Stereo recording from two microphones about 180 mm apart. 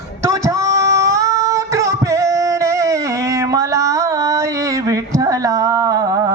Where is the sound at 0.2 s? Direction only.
15° right (ahead or behind).